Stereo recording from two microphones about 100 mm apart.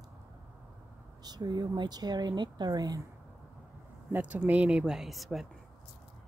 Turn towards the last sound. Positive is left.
turn(degrees=0)  # may be behind; listen again after turning